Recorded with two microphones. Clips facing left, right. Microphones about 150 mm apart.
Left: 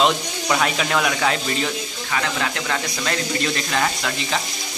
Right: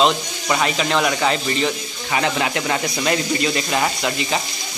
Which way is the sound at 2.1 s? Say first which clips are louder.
Right 4 dB; 20° right (ahead or behind).